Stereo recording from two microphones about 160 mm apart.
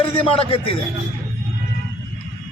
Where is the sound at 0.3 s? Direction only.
35° left (ahead or behind).